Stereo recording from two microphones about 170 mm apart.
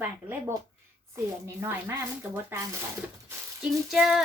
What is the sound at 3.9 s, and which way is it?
Speech, centre (ahead or behind).